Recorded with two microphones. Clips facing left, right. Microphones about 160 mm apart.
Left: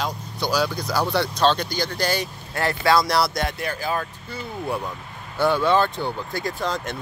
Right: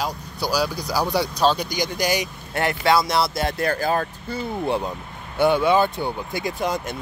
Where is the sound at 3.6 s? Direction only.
45° right (ahead or behind).